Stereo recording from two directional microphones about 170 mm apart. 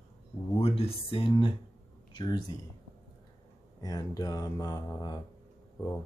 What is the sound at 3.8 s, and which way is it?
Speech, 20° left (ahead or behind).